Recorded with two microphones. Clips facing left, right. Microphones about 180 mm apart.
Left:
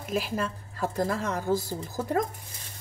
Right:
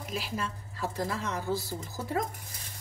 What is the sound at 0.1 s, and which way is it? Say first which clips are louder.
A woman's voice: left 7 dB; 50° left (ahead or behind).